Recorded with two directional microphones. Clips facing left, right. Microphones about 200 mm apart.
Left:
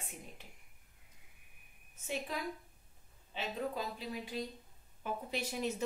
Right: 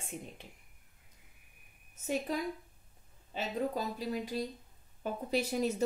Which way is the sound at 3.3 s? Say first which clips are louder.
Right 4 dB; 40° right (ahead or behind).